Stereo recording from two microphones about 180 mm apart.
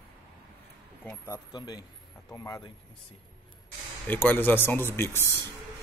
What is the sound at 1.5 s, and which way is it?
Speech, 20° left (ahead or behind).